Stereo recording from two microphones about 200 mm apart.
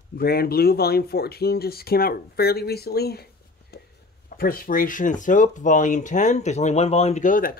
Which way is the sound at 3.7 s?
50° left (ahead or behind).